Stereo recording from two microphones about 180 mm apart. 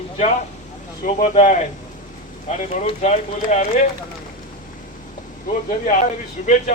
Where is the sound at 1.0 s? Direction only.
45° left (ahead or behind).